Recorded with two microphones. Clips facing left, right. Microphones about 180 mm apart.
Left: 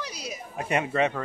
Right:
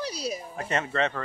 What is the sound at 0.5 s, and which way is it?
Speech, 15° left (ahead or behind).